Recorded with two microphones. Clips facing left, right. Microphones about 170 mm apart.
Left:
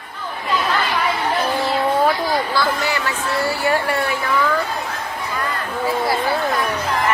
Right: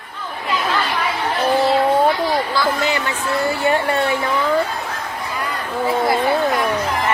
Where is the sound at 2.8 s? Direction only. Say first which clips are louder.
Right 2 dB; 20° right (ahead or behind).